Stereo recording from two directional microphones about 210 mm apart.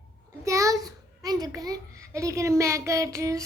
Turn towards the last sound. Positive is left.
turn(degrees=-15)  # may be behind; listen again after turning